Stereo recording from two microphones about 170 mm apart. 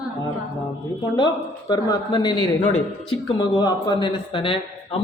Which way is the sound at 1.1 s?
25° left (ahead or behind).